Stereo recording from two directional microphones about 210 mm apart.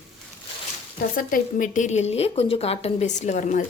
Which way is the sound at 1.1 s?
40° left (ahead or behind).